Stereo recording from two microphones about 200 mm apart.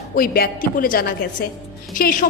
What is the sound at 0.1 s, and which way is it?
A woman's voice, 45° left (ahead or behind).